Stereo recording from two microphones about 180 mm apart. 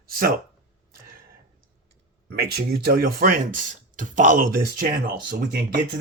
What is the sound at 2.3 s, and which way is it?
Speech, 60° right (ahead or behind).